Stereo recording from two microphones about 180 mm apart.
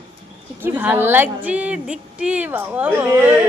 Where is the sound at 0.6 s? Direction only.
10° right (ahead or behind).